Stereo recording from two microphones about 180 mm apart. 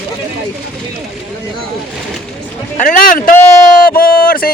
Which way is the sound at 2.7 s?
45° left (ahead or behind).